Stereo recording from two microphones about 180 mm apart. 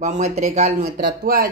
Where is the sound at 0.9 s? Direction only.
55° right (ahead or behind).